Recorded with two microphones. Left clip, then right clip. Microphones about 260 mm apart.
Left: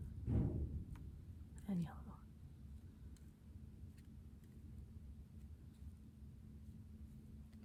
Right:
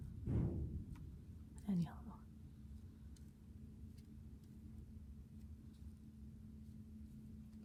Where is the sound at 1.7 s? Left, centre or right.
Centre.